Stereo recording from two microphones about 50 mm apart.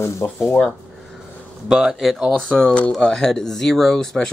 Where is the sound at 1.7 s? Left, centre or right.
Centre.